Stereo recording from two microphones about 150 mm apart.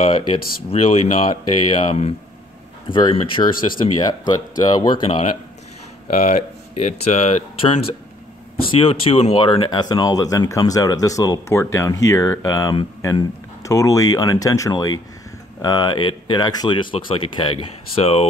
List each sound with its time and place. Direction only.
0.0 s speech: 35° left (ahead or behind)
5.0 s speech: 40° left (ahead or behind)
8.7 s speech: 40° left (ahead or behind)